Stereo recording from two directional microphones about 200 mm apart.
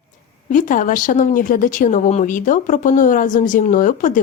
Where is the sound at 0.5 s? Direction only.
40° left (ahead or behind).